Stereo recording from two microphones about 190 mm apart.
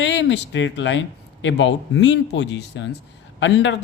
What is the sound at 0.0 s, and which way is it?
Speech, 70° left (ahead or behind).